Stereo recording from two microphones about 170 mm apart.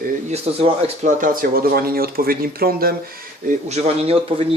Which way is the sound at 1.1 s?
55° right (ahead or behind).